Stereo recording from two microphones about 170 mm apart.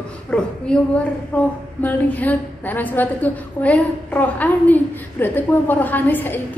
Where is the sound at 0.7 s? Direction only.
5° left (ahead or behind).